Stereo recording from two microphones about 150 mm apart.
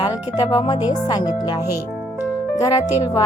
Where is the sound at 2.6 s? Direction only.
25° left (ahead or behind).